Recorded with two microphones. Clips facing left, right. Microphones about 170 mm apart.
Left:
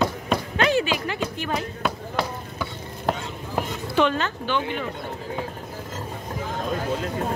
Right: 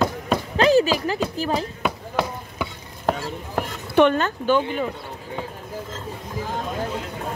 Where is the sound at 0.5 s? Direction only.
35° right (ahead or behind).